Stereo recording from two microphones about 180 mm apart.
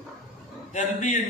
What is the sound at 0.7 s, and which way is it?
Speech, 45° left (ahead or behind).